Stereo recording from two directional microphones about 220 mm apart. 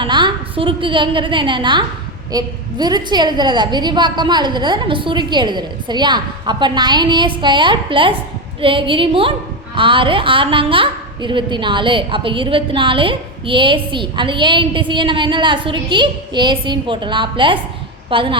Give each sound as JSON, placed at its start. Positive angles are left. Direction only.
{"t": 0.0, "sound": "a woman's voice", "side_deg": -20}